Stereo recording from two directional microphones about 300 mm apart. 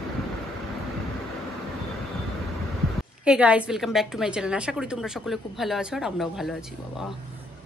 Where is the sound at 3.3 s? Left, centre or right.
Centre.